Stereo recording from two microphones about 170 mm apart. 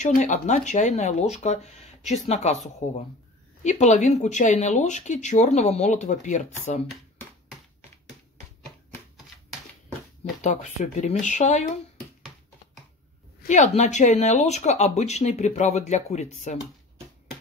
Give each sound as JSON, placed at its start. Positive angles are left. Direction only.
{"t": 0.0, "sound": "speech", "side_deg": 45}
{"t": 10.4, "sound": "speech", "side_deg": 45}
{"t": 13.5, "sound": "speech", "side_deg": 45}